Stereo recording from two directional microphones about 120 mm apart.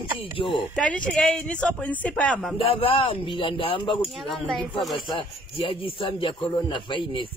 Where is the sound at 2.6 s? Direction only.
50° left (ahead or behind).